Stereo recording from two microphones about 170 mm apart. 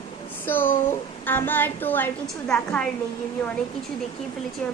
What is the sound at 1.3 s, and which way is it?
A woman's voice, 10° left (ahead or behind).